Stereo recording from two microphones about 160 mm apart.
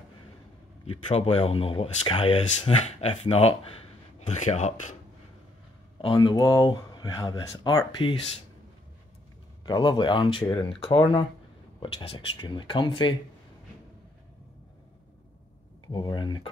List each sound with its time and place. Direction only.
0.8 s speech: 35° left (ahead or behind)
5.9 s speech: 30° left (ahead or behind)
9.7 s speech: 30° left (ahead or behind)
15.9 s speech: 30° left (ahead or behind)